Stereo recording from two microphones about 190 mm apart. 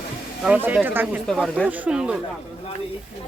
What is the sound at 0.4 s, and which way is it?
Speech, 10° right (ahead or behind).